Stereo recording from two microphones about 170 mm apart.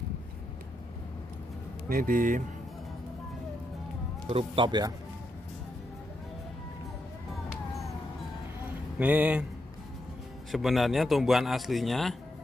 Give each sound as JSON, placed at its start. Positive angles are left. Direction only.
{"t": 1.9, "sound": "speech", "side_deg": -50}
{"t": 4.3, "sound": "speech", "side_deg": -30}
{"t": 8.9, "sound": "speech", "side_deg": -10}
{"t": 10.5, "sound": "speech", "side_deg": 0}